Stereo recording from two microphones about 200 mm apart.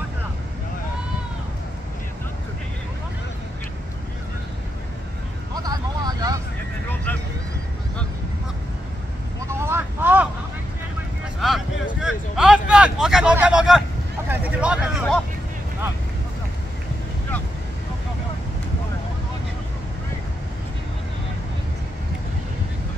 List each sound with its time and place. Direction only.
5.5 s a sound: 20° right (ahead or behind)
9.5 s vehicle: 10° right (ahead or behind)
11.4 s vehicle: centre (ahead or behind)